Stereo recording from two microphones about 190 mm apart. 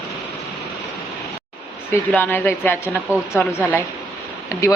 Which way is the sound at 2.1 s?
10° left (ahead or behind).